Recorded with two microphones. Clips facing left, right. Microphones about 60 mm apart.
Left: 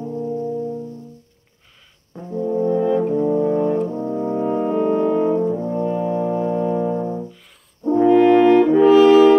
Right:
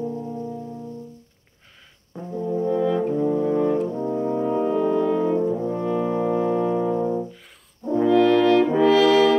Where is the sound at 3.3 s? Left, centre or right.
Centre.